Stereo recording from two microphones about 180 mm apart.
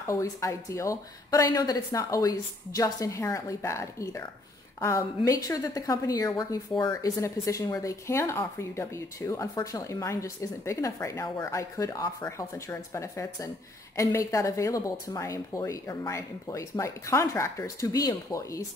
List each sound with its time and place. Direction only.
0.0 s a woman's voice: 15° left (ahead or behind)